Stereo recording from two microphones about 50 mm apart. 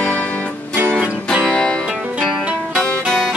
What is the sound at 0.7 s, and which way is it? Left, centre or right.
Music, right.